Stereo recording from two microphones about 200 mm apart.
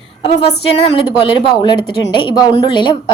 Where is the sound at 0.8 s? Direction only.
25° left (ahead or behind).